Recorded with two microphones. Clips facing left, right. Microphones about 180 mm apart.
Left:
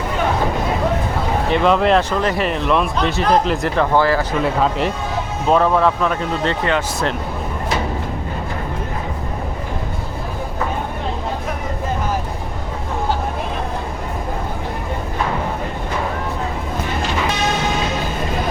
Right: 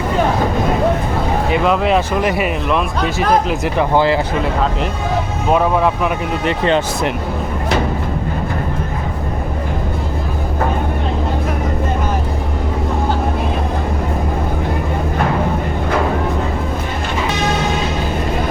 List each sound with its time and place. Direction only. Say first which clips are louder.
1.5 s speech: left 1 dB; 5° right (ahead or behind)
3.9 s speech: right 2 dB; 20° right (ahead or behind)
5.5 s speech: even; 10° right (ahead or behind)